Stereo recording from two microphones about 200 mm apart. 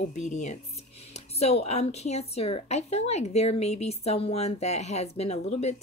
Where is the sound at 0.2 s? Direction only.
35° left (ahead or behind).